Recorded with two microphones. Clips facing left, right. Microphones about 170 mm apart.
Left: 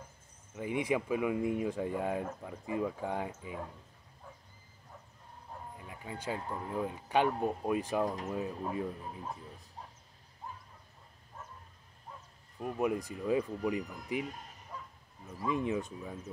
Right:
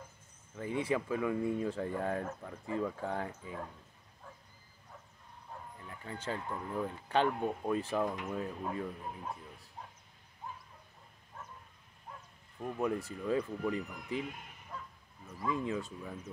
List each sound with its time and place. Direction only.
0.5 s speech: 15° left (ahead or behind)
5.8 s speech: 15° left (ahead or behind)
12.5 s speech: 10° left (ahead or behind)
14.2 s speech: 40° left (ahead or behind)
15.4 s speech: 20° left (ahead or behind)